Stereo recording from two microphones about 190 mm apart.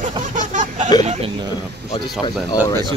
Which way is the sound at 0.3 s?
40° right (ahead or behind).